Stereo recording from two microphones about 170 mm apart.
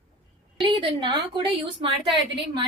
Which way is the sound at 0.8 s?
25° right (ahead or behind).